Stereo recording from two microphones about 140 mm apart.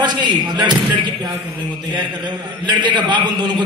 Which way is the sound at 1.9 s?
30° right (ahead or behind).